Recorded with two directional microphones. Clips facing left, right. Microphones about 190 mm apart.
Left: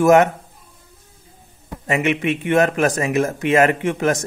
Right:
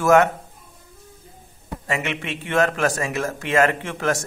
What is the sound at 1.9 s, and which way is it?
Speech, 20° left (ahead or behind).